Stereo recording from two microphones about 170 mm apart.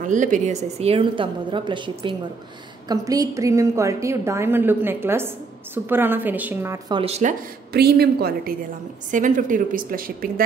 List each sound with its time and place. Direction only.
0.0 s a woman's voice: 50° right (ahead or behind); by 6.8 s 15° right (ahead or behind)
6.9 s a woman's voice: 35° right (ahead or behind)
7.7 s a woman's voice: 70° right (ahead or behind)
9.1 s a woman's voice: 50° right (ahead or behind)